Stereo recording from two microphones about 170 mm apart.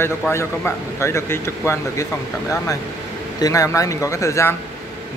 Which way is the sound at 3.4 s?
20° left (ahead or behind).